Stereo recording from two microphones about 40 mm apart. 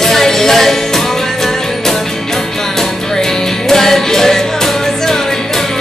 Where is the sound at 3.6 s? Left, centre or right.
Centre.